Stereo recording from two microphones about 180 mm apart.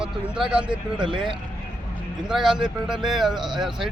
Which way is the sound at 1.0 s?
25° right (ahead or behind).